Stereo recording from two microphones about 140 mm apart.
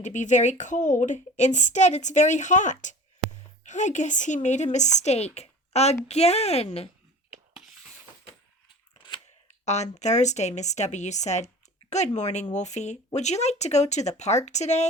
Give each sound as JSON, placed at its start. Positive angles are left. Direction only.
{"t": 0.0, "sound": "a woman's voice", "side_deg": 60}
{"t": 7.3, "sound": "a sound", "side_deg": -10}
{"t": 9.6, "sound": "a woman's voice", "side_deg": 55}